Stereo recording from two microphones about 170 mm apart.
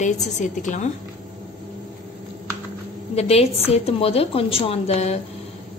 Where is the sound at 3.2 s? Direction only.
35° left (ahead or behind).